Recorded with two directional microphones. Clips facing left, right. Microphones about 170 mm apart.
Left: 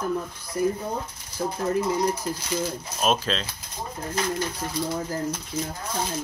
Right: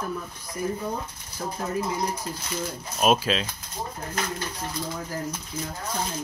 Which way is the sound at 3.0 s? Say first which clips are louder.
Right 2 dB; 10° right (ahead or behind).